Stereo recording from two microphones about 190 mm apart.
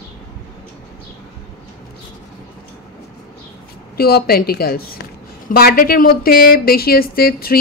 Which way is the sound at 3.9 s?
55° left (ahead or behind).